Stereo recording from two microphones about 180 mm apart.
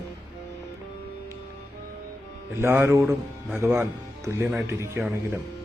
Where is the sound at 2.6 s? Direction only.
15° right (ahead or behind).